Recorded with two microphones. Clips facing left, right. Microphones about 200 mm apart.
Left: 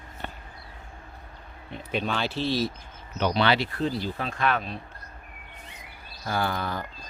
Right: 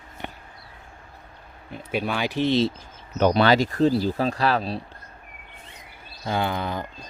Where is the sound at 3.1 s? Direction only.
45° right (ahead or behind).